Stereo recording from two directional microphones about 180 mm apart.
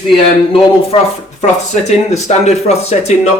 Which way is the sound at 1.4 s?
40° left (ahead or behind).